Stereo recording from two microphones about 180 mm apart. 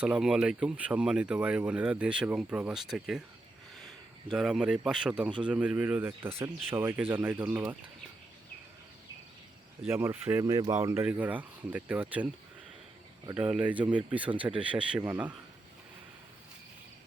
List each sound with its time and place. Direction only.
0.0 s speech: 5° right (ahead or behind)
4.3 s speech: 5° right (ahead or behind)
9.8 s speech: 15° right (ahead or behind)
13.2 s speech: 20° right (ahead or behind)
13.5 s speech: 10° right (ahead or behind)